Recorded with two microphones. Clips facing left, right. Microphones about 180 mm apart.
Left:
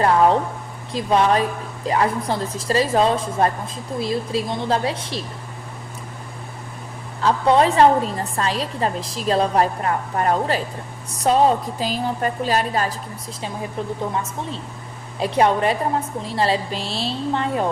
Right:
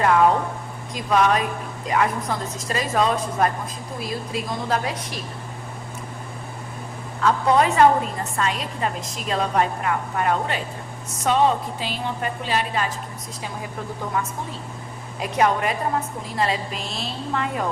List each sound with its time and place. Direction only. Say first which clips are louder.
0.0 s a sound: left 1 dB; 35° left (ahead or behind)
0.9 s a woman's voice: left 2 dB; 30° left (ahead or behind)
7.2 s a woman's voice: left 2 dB; 30° left (ahead or behind)
15.2 s a woman's voice: left 3 dB; 30° left (ahead or behind)